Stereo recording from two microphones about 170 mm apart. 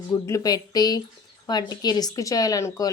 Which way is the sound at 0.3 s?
20° left (ahead or behind).